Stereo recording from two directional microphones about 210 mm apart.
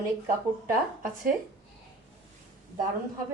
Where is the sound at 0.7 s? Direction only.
40° right (ahead or behind).